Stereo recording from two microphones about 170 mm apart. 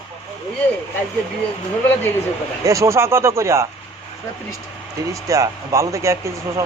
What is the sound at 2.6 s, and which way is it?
Speech, 20° right (ahead or behind).